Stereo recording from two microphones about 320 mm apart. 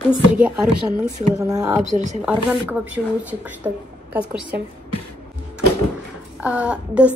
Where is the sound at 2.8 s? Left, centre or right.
Centre.